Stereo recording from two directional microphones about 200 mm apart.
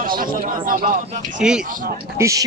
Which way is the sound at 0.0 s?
45° right (ahead or behind).